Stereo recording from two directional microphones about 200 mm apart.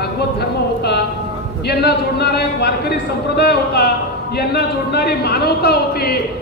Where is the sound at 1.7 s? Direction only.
55° left (ahead or behind).